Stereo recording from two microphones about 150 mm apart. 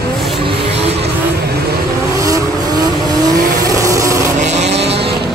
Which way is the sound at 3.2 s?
25° right (ahead or behind).